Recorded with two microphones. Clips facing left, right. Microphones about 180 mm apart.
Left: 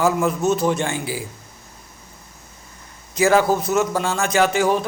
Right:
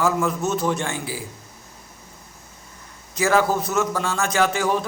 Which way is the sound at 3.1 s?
15° left (ahead or behind).